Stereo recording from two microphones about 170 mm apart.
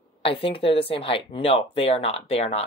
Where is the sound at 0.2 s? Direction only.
30° left (ahead or behind).